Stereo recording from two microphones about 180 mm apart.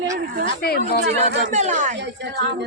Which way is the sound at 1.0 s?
40° right (ahead or behind).